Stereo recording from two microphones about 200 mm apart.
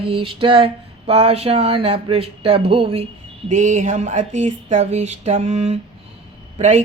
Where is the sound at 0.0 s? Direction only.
25° right (ahead or behind).